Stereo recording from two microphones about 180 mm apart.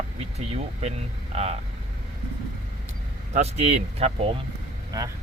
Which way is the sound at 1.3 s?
35° right (ahead or behind).